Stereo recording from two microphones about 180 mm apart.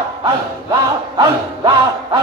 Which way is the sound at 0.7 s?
25° right (ahead or behind).